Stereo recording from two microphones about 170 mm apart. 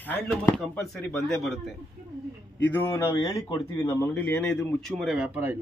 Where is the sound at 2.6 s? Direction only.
15° left (ahead or behind).